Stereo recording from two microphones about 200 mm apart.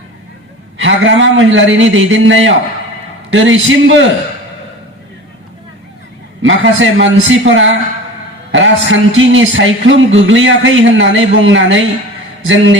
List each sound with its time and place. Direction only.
0.8 s speech: 70° right (ahead or behind)
6.4 s speech: 70° right (ahead or behind)